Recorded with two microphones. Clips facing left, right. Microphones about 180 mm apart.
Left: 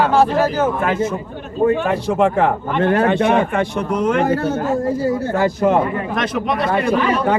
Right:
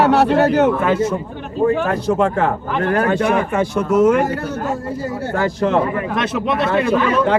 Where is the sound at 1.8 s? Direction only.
Centre (ahead or behind).